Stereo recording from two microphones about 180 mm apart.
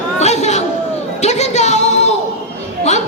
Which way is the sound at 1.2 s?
40° left (ahead or behind).